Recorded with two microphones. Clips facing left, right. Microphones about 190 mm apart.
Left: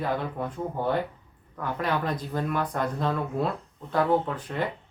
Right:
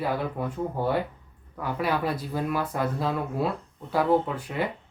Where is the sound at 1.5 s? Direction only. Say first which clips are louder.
Right 1 dB; 10° right (ahead or behind).